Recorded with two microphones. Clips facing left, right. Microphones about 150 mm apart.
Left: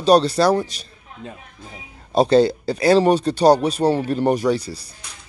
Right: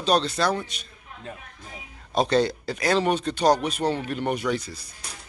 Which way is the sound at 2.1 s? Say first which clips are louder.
Left 7 dB; 30° left (ahead or behind).